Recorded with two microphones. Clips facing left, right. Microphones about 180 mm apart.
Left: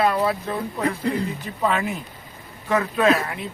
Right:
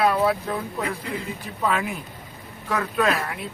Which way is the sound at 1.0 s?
40° left (ahead or behind).